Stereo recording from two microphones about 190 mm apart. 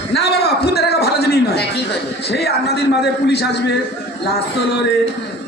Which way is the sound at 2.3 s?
60° left (ahead or behind).